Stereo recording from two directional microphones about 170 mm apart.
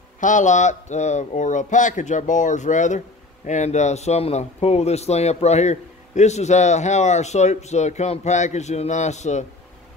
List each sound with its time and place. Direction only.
0.2 s speech: 45° left (ahead or behind)